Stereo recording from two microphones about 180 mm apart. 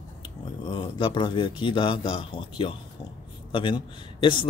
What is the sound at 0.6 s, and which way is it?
Speech, 25° left (ahead or behind).